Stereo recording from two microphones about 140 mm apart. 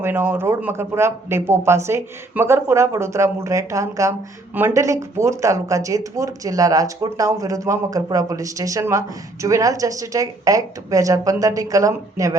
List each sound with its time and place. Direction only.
0.0 s speech: 15° right (ahead or behind)